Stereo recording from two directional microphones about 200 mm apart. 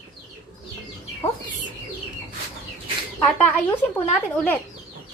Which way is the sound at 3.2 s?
10° left (ahead or behind).